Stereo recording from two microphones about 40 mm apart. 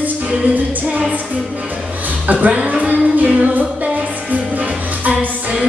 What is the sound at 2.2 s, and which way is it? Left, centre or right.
Speech, right.